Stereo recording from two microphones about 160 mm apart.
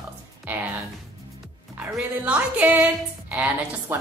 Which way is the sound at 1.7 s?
10° right (ahead or behind).